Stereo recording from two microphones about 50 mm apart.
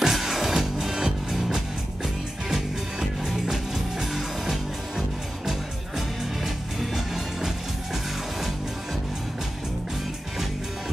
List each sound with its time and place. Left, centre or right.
0.0 s music: centre